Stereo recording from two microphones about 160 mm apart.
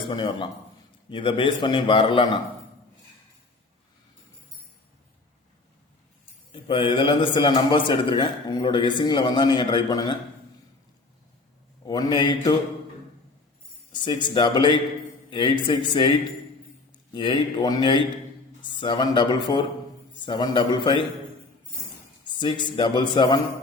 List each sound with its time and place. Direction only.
0.1 s a man's voice: 30° left (ahead or behind)
6.5 s a man's voice: 30° left (ahead or behind)
11.9 s a man's voice: 25° left (ahead or behind)
13.9 s a man's voice: 30° left (ahead or behind)
22.4 s a man's voice: 30° left (ahead or behind)